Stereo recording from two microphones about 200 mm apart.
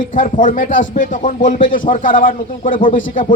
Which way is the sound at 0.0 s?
40° left (ahead or behind).